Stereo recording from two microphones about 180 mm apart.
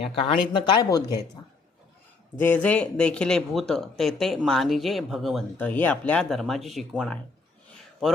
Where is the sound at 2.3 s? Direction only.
10° left (ahead or behind).